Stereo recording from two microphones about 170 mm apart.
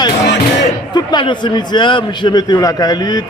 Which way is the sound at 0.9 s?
25° left (ahead or behind).